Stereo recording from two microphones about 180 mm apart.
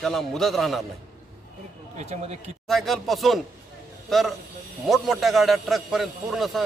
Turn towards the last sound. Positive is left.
turn(degrees=0)  # may be behind; listen again after turning